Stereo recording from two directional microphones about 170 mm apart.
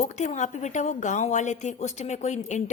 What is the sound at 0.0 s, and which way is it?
A woman's voice, 45° left (ahead or behind).